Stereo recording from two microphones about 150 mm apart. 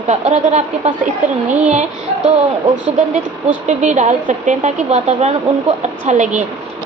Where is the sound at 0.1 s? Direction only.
50° right (ahead or behind).